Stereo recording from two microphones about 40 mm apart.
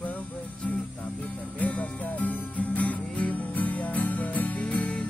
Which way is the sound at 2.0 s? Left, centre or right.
Left.